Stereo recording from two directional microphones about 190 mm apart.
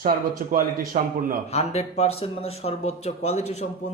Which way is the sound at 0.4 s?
40° right (ahead or behind).